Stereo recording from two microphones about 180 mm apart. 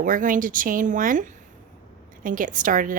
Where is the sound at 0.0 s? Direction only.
50° right (ahead or behind).